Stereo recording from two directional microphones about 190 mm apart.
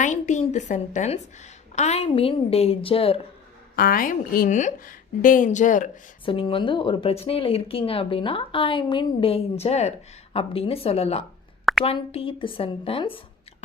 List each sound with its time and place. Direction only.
0.0 s a woman's voice: 40° left (ahead or behind)
3.8 s a woman's voice: 50° left (ahead or behind)
6.2 s a woman's voice: 30° left (ahead or behind)